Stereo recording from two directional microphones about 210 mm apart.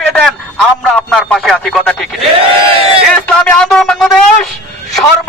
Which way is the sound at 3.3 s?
5° left (ahead or behind).